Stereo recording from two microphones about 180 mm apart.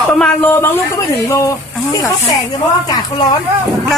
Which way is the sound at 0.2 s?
10° left (ahead or behind).